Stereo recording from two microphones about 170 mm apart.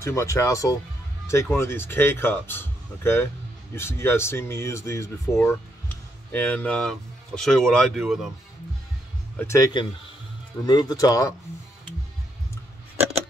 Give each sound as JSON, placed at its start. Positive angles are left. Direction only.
{"t": 0.0, "sound": "speech", "side_deg": 15}
{"t": 9.4, "sound": "speech", "side_deg": 15}